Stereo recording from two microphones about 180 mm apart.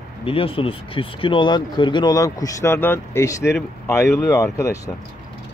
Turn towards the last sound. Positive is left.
turn(degrees=15)  # may be behind; listen again after turning